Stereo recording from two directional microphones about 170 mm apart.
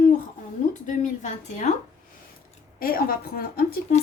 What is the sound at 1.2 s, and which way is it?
Speech, 45° left (ahead or behind).